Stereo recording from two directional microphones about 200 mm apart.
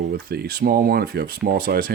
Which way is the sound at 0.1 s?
50° right (ahead or behind).